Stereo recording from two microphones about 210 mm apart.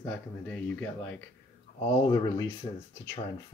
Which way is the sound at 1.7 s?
20° left (ahead or behind).